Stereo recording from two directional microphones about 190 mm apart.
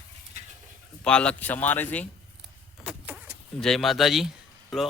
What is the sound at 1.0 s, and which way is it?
Speech, 5° left (ahead or behind).